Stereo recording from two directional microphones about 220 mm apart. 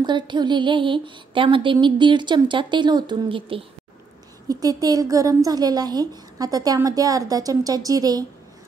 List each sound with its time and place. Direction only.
0.0 s a woman's voice: 20° right (ahead or behind)